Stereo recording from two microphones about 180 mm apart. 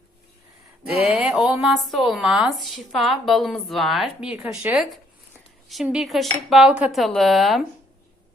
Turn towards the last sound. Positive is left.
turn(degrees=0)  # may be behind; listen again after turning